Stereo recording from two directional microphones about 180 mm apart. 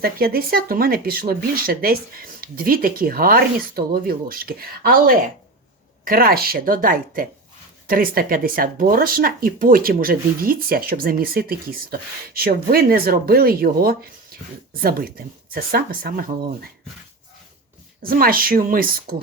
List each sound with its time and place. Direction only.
0.0 s speech: 55° right (ahead or behind)
18.0 s speech: 55° right (ahead or behind)